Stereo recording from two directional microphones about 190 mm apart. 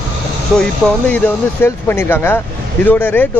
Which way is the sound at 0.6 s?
10° left (ahead or behind).